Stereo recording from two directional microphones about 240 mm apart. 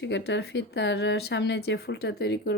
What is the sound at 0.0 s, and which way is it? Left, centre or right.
Speech, left.